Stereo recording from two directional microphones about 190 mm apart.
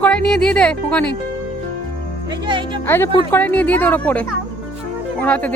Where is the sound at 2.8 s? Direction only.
10° left (ahead or behind).